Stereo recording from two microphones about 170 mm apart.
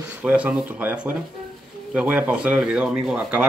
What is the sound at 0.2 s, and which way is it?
Speech, 10° right (ahead or behind).